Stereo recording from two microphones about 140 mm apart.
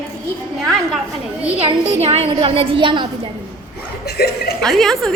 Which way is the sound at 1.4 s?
45° right (ahead or behind).